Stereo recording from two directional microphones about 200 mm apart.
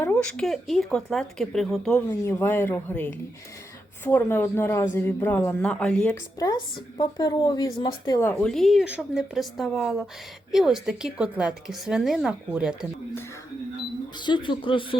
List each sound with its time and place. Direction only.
0.0 s a woman's voice: 5° left (ahead or behind)
6.4 s a woman's voice: 20° left (ahead or behind); by 12.9 s 5° right (ahead or behind)
14.2 s speech: 25° left (ahead or behind)